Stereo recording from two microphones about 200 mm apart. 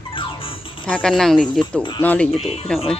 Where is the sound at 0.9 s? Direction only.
5° left (ahead or behind).